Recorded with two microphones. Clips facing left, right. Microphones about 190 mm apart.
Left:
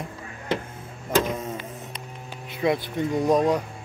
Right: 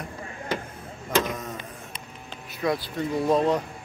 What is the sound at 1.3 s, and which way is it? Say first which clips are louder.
Power windows: left 3 dB; 30° left (ahead or behind).